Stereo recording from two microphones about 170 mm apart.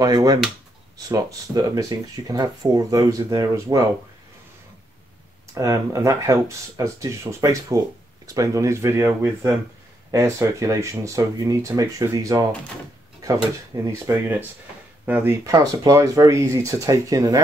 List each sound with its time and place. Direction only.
0.0 s speech: 20° right (ahead or behind)
5.5 s speech: 20° right (ahead or behind)